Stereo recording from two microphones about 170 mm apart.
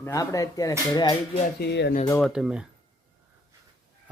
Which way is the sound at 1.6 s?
85° left.